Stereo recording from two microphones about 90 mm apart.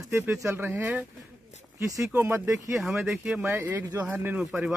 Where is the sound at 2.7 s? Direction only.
5° right (ahead or behind).